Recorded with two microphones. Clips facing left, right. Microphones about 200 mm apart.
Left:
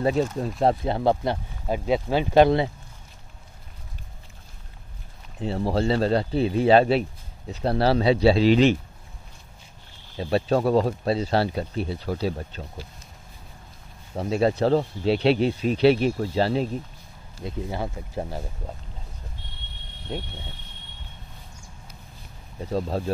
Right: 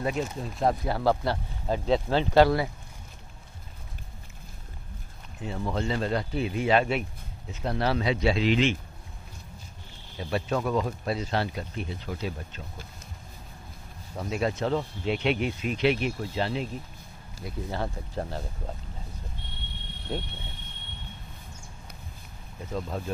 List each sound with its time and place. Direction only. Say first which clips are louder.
0.0 s speech: left 7 dB; 30° left (ahead or behind)
5.4 s speech: left 6 dB; 30° left (ahead or behind)
10.1 s speech: left 6 dB; 30° left (ahead or behind)
14.1 s speech: left 6 dB; 30° left (ahead or behind)
17.5 s speech: left 2 dB; 15° left (ahead or behind)
20.1 s speech: left 1 dB; centre (ahead or behind)
22.7 s speech: left 6 dB; 35° left (ahead or behind)